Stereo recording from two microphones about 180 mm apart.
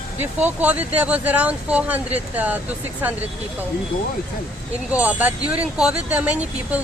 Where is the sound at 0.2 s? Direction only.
10° right (ahead or behind).